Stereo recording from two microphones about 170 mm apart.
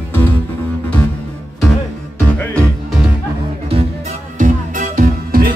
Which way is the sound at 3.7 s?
40° right (ahead or behind).